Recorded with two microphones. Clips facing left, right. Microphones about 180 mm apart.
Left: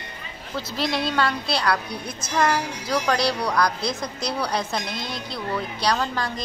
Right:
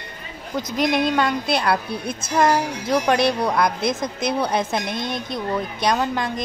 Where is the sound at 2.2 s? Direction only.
25° right (ahead or behind).